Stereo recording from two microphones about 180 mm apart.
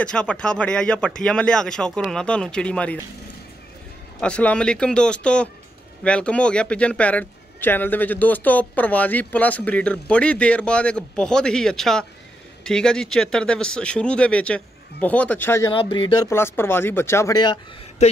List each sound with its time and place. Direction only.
0.0 s speech: 5° left (ahead or behind)
4.2 s speech: 5° left (ahead or behind)
15.7 s speech: 30° left (ahead or behind)
16.3 s speech: 15° left (ahead or behind)
18.0 s speech: 40° left (ahead or behind)